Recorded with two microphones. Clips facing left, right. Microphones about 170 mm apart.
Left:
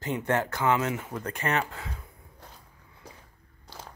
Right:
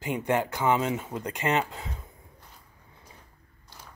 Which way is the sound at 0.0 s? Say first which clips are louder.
Right 1 dB; 15° right (ahead or behind).